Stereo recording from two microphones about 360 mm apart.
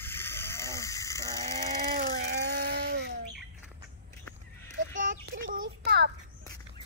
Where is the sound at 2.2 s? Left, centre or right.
Right.